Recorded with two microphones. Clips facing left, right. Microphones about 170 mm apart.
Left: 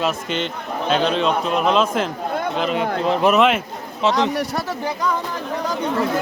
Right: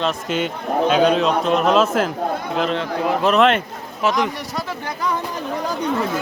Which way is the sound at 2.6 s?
5° left (ahead or behind).